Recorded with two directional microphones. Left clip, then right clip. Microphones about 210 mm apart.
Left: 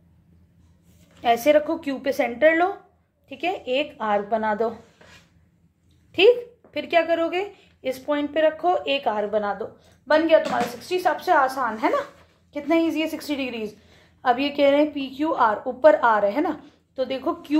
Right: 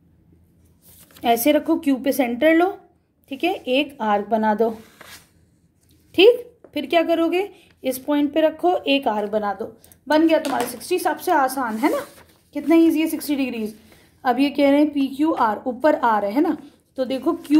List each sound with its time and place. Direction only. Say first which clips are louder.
1.2 s a woman's voice: even; 40° right (ahead or behind)
6.1 s a woman's voice: right 3 dB; 40° right (ahead or behind)